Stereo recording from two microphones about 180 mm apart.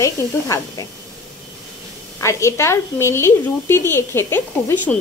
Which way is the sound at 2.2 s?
15° left (ahead or behind).